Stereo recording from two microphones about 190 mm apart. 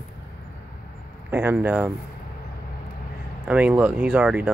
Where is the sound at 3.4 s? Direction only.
5° right (ahead or behind).